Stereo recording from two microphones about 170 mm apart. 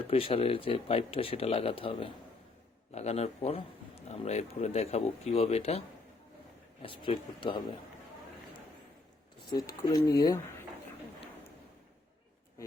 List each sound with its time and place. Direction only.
0.1 s speech: 35° left (ahead or behind)
6.8 s speech: 30° left (ahead or behind)
9.5 s speech: 20° left (ahead or behind)